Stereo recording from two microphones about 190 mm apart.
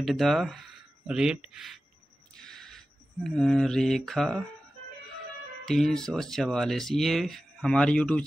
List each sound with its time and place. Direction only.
0.0 s speech: centre (ahead or behind)
2.3 s a sound: 5° left (ahead or behind)
3.3 s speech: 5° left (ahead or behind)
5.7 s speech: centre (ahead or behind)